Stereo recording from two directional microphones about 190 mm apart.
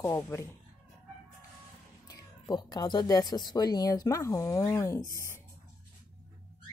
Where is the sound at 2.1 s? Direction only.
20° left (ahead or behind).